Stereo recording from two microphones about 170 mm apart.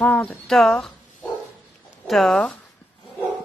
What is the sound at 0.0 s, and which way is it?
Speech, 5° left (ahead or behind).